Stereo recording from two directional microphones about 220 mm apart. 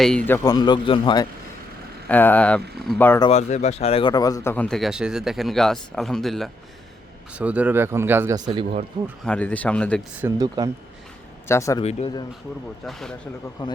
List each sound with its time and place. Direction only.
0.0 s speech: 5° left (ahead or behind); by 1.3 s 20° left (ahead or behind)
2.0 s speech: 5° left (ahead or behind)
3.2 s speech: 30° left (ahead or behind); by 8.8 s 20° right (ahead or behind)
9.2 s speech: 5° left (ahead or behind)
10.2 s speech: 15° right (ahead or behind)
11.4 s speech: 15° left (ahead or behind)
11.8 s speech: 30° left (ahead or behind)
12.8 s speech: centre (ahead or behind)